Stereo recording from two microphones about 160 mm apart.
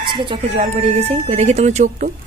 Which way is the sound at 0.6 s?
45° right (ahead or behind).